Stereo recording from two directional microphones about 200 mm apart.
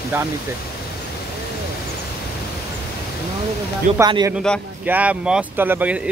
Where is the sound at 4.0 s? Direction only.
20° right (ahead or behind).